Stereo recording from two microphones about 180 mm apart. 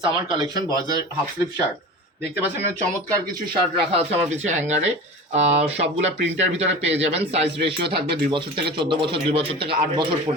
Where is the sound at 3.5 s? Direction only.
35° right (ahead or behind).